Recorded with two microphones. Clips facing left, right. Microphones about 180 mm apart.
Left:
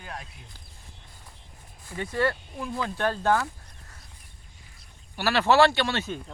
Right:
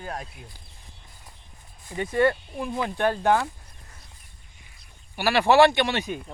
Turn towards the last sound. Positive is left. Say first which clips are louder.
# right 3 dB
turn(degrees=-15)  # may be behind; listen again after turning